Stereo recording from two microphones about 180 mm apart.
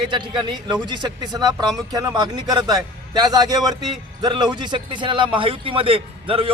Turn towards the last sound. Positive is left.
turn(degrees=-30)  # may be behind; listen again after turning